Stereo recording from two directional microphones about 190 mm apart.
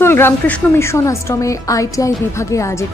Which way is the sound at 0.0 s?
10° left (ahead or behind).